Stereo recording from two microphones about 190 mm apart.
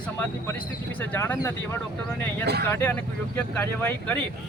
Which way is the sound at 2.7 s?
15° left (ahead or behind).